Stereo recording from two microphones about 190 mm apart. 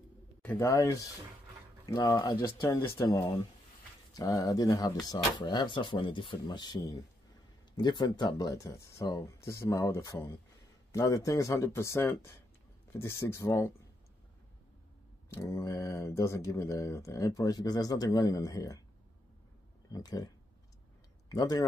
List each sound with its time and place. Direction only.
0.4 s speech: 10° left (ahead or behind)
15.2 s speech: 15° left (ahead or behind)
19.9 s speech: 20° left (ahead or behind)
21.3 s speech: 20° left (ahead or behind)